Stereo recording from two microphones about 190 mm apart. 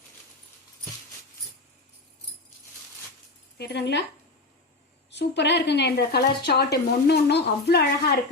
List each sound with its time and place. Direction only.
3.6 s speech: 60° left (ahead or behind)
5.1 s speech: 65° left (ahead or behind)